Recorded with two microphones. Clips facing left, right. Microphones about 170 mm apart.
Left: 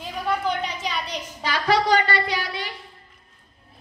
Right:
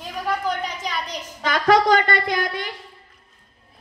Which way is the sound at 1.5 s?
50° right (ahead or behind).